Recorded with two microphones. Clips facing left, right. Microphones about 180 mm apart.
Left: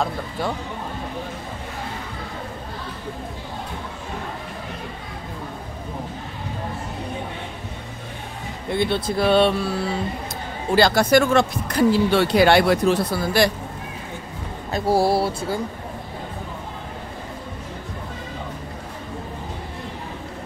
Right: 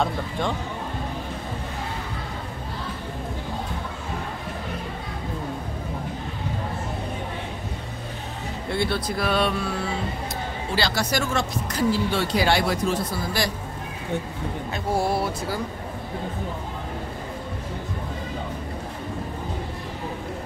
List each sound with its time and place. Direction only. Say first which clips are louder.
0.0 s speech: even; 5° left (ahead or behind)
8.6 s speech: left 4 dB; 20° left (ahead or behind)
10.7 s speech: left 10 dB; 50° left (ahead or behind); by 13.5 s 70° left (ahead or behind)
14.7 s speech: left 6 dB; 35° left (ahead or behind)